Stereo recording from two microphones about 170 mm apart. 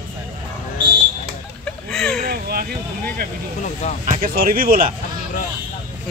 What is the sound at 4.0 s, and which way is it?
Speech, 45° right (ahead or behind).